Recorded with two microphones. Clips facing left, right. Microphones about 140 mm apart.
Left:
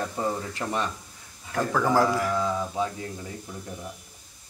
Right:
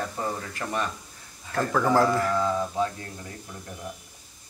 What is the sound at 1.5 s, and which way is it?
Speech, 10° left (ahead or behind).